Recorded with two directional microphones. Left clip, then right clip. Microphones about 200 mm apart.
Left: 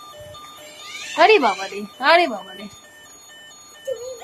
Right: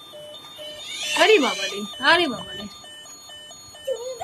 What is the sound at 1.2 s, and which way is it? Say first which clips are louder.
A child's voice: left 3 dB; 20° left (ahead or behind).